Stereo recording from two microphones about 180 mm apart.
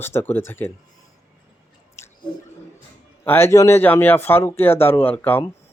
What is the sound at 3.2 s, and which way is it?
Speech, 10° left (ahead or behind).